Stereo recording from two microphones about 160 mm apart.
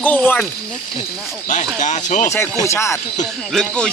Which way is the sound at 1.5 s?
50° left (ahead or behind).